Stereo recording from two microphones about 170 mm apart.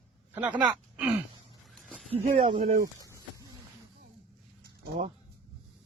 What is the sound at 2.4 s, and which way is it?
Speech, 35° right (ahead or behind).